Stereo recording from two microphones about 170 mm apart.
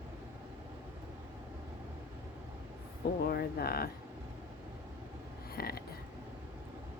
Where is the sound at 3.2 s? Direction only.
65° left (ahead or behind).